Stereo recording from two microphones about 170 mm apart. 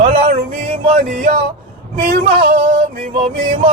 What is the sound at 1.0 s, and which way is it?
Music, 55° right (ahead or behind).